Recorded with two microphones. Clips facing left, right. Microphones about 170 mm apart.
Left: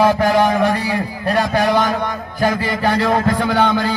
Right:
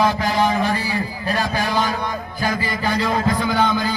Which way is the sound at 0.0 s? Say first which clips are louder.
Left 5 dB; 60° left (ahead or behind).